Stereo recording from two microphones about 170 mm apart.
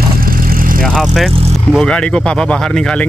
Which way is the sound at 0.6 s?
55° right (ahead or behind).